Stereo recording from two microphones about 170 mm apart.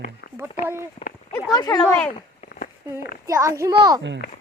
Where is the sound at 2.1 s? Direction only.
60° left (ahead or behind).